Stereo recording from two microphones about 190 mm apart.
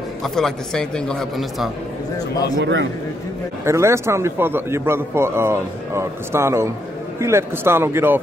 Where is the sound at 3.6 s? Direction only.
15° right (ahead or behind).